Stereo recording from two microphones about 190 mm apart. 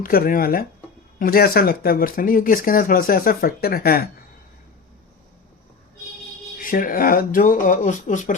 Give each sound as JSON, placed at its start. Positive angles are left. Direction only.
{"t": 0.0, "sound": "speech", "side_deg": 50}
{"t": 6.6, "sound": "speech", "side_deg": 45}